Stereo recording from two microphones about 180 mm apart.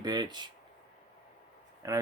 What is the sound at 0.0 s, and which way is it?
Speech, 25° right (ahead or behind).